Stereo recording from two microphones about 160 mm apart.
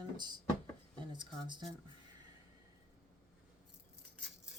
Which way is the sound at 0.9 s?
30° right (ahead or behind).